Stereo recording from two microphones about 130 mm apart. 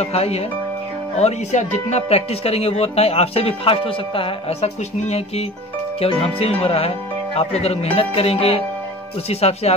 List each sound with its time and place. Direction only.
0.0 s speech: 55° left (ahead or behind)